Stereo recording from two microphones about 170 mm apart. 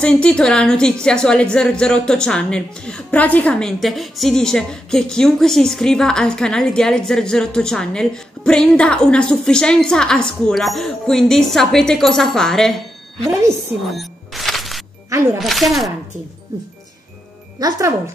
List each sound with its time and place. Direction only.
0.0 s a woman's voice: 5° left (ahead or behind)
13.3 s a woman's voice: 15° right (ahead or behind)
13.9 s music: centre (ahead or behind)
15.4 s a woman's voice: centre (ahead or behind)
17.6 s speech: 20° right (ahead or behind)